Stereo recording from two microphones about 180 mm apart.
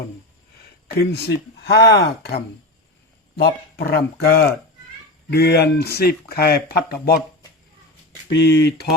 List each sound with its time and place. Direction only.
0.9 s speech: 60° left (ahead or behind)
8.3 s speech: 70° left (ahead or behind)